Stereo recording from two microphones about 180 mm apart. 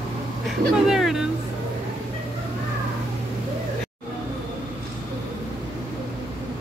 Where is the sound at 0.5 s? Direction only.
Centre (ahead or behind).